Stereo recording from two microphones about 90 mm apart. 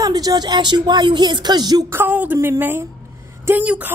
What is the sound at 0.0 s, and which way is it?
Speech, 45° right (ahead or behind).